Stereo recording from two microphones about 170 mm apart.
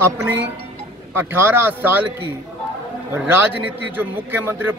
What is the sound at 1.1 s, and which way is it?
Speech, 10° right (ahead or behind).